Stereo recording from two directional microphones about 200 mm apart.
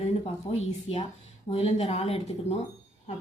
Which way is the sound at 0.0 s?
30° left (ahead or behind).